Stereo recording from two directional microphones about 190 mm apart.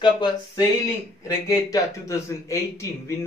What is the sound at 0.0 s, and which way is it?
Speech, 25° left (ahead or behind).